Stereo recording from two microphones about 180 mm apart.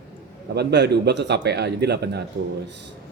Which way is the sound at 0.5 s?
65° right (ahead or behind).